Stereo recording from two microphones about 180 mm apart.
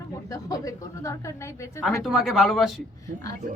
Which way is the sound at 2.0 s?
Centre (ahead or behind).